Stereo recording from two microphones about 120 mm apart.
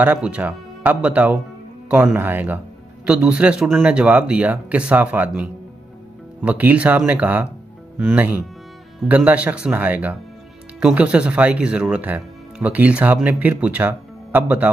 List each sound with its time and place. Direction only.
0.0 s speech: 10° right (ahead or behind)